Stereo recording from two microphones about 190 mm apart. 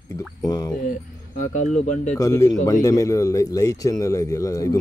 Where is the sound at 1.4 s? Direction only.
40° left (ahead or behind).